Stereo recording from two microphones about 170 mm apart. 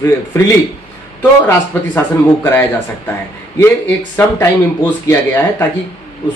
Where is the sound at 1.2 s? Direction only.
15° left (ahead or behind).